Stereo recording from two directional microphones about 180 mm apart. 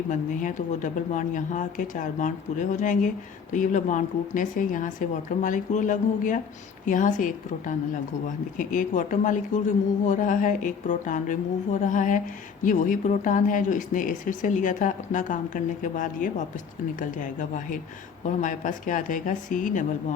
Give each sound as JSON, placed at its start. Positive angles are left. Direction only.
{"t": 0.1, "sound": "a woman's voice", "side_deg": 45}